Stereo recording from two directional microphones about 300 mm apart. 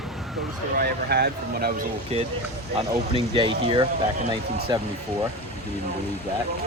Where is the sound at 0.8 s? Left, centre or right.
Right; by 4.8 s centre.